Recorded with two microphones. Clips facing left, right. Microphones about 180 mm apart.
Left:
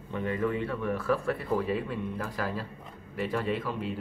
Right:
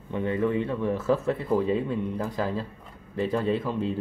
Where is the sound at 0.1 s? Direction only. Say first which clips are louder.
Right 4 dB; 20° right (ahead or behind).